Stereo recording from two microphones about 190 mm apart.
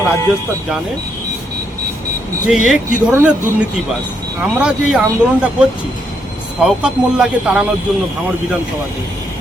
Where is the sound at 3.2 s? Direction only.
5° right (ahead or behind).